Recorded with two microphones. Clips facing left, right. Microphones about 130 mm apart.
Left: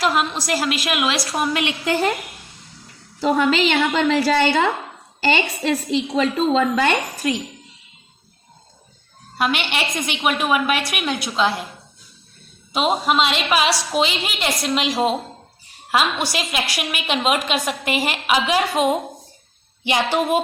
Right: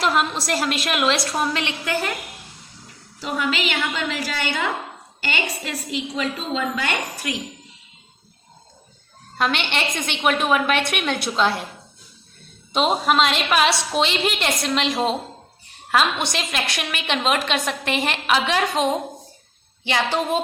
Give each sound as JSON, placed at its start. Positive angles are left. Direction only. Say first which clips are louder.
{"t": 0.0, "sound": "a woman's voice", "louder": "left 1 dB", "side_deg": 0}
{"t": 1.8, "sound": "a woman's voice", "louder": "left 7 dB", "side_deg": 25}
{"t": 3.2, "sound": "a woman's voice", "louder": "left 7 dB", "side_deg": 35}
{"t": 7.2, "sound": "a woman's voice", "louder": "left 8 dB", "side_deg": 30}
{"t": 9.4, "sound": "a woman's voice", "louder": "left 1 dB", "side_deg": 10}
{"t": 12.7, "sound": "a woman's voice", "louder": "even", "side_deg": 5}